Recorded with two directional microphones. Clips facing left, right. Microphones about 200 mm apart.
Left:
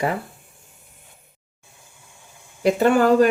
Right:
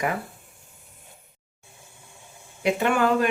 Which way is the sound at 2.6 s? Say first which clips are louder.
Left 6 dB; 35° left (ahead or behind).